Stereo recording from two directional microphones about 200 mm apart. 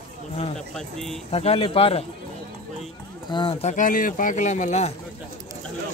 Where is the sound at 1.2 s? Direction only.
30° left (ahead or behind).